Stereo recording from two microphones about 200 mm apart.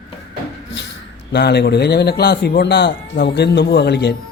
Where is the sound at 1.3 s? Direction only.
55° left (ahead or behind).